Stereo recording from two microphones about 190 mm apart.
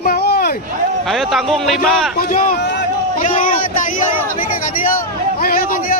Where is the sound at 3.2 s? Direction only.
45° left (ahead or behind).